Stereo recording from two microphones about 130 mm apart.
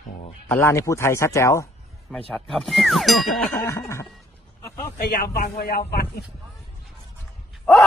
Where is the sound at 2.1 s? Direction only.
5° left (ahead or behind).